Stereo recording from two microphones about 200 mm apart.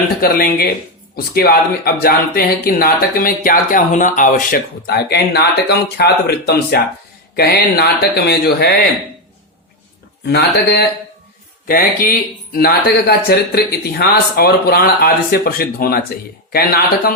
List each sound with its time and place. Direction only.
0.2 s speech: 50° left (ahead or behind)
10.2 s speech: 55° left (ahead or behind)